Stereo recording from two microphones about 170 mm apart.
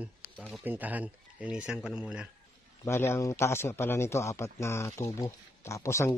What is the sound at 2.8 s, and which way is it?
A man's voice, 15° left (ahead or behind).